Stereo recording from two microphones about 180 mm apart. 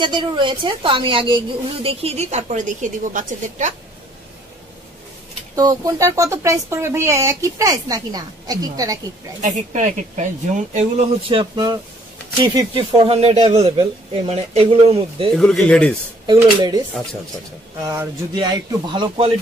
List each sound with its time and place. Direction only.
0.0 s a woman's voice: 25° right (ahead or behind); by 3.7 s 45° right (ahead or behind)
5.6 s speech: 20° right (ahead or behind)
9.4 s a woman's voice: 40° right (ahead or behind)
15.3 s speech: centre (ahead or behind)
17.8 s speech: 20° right (ahead or behind)